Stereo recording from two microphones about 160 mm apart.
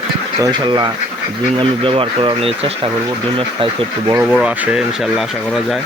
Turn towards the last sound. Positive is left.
turn(degrees=-5)  # may be behind; listen again after turning